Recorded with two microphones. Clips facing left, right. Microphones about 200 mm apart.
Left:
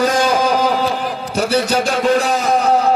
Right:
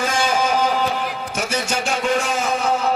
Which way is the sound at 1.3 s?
35° left (ahead or behind).